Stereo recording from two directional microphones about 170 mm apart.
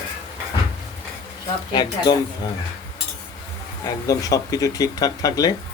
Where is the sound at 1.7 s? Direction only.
25° left (ahead or behind).